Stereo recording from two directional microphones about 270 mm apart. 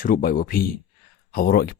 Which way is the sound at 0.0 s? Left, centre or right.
Left.